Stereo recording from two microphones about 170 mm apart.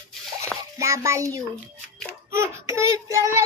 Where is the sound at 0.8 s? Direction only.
15° right (ahead or behind).